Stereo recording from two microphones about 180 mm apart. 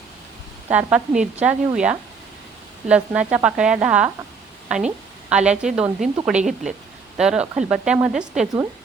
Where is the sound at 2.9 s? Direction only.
5° right (ahead or behind).